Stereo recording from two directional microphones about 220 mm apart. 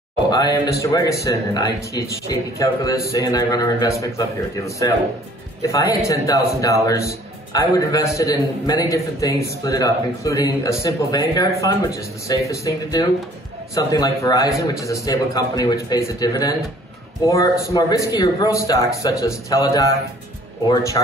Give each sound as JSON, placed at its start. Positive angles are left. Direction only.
{"t": 0.3, "sound": "a man's voice", "side_deg": 15}